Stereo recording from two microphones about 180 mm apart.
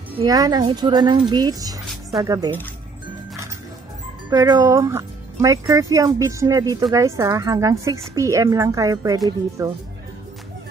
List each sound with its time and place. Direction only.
0.2 s a woman's voice: 20° right (ahead or behind)
1.9 s music: centre (ahead or behind)
2.2 s a woman's voice: 20° right (ahead or behind)
4.3 s a woman's voice: 20° right (ahead or behind)